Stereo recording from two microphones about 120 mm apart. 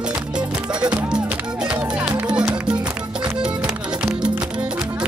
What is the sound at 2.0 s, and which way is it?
Music, 10° right (ahead or behind).